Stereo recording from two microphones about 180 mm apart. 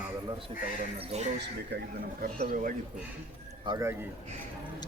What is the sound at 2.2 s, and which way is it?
Speech, 50° right (ahead or behind).